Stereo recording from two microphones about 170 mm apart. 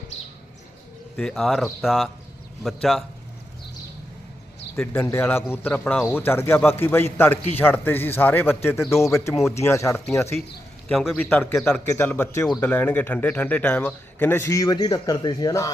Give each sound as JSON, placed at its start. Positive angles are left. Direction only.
{"t": 1.1, "sound": "speech", "side_deg": 5}
{"t": 4.8, "sound": "a man's voice", "side_deg": 10}
{"t": 10.8, "sound": "a man's voice", "side_deg": 0}